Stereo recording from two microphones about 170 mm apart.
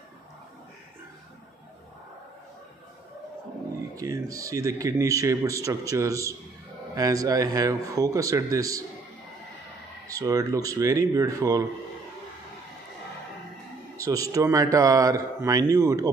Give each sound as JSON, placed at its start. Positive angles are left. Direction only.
{"t": 4.3, "sound": "speech", "side_deg": -20}
{"t": 10.0, "sound": "speech", "side_deg": -20}
{"t": 14.0, "sound": "speech", "side_deg": -20}